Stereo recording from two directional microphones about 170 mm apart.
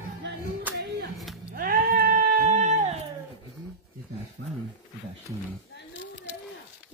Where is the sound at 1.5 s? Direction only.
55° right (ahead or behind).